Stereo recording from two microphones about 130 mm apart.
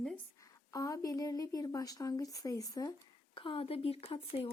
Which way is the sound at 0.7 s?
25° left (ahead or behind).